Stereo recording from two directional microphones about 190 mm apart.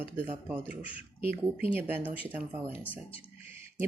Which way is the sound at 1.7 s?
10° right (ahead or behind).